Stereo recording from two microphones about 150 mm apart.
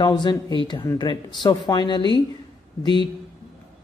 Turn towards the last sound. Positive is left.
turn(degrees=30)  # may be behind; listen again after turning